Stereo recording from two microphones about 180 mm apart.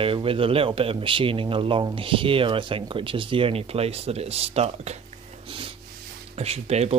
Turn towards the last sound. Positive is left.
turn(degrees=-35)  # may be behind; listen again after turning